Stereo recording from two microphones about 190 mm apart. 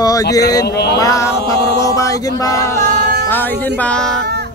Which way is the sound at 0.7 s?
60° left (ahead or behind).